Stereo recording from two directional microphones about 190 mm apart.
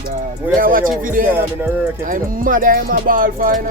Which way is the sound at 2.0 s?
45° right (ahead or behind).